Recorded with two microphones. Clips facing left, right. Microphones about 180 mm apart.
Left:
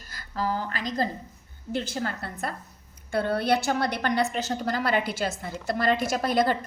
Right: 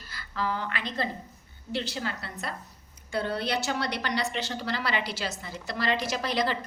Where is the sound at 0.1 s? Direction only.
45° left (ahead or behind).